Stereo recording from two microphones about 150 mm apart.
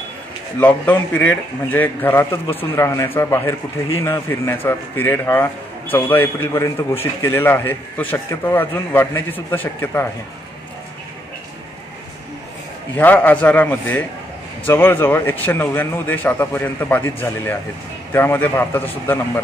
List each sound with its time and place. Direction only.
0.6 s a man's voice: 10° left (ahead or behind)
12.9 s a man's voice: 10° left (ahead or behind)